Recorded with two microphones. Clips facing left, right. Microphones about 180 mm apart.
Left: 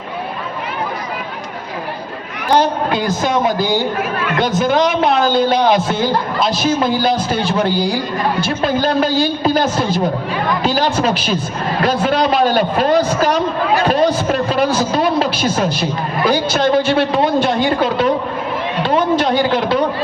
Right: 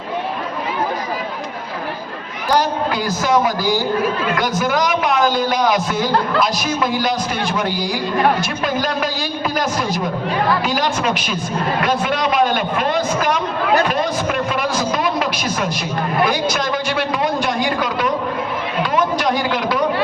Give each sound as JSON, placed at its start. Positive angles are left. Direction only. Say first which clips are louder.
{"t": 2.5, "sound": "a man's voice", "louder": "left 3 dB", "side_deg": 25}